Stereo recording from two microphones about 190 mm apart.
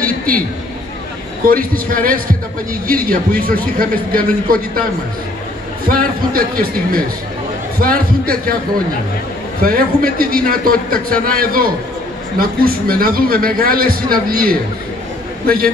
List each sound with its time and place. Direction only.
1.4 s a man's voice: 50° right (ahead or behind)
5.9 s a man's voice: 50° right (ahead or behind)
9.6 s a man's voice: 50° right (ahead or behind)